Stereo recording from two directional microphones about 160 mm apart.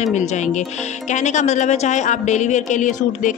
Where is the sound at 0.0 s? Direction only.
45° left (ahead or behind).